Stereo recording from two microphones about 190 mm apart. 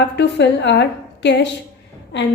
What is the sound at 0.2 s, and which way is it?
A woman's voice, 65° left (ahead or behind).